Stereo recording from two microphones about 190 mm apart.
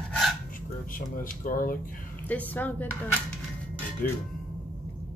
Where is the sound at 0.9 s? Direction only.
45° left (ahead or behind).